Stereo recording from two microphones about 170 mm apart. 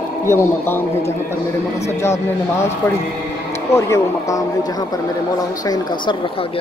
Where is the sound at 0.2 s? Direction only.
15° left (ahead or behind); by 6.6 s 30° left (ahead or behind).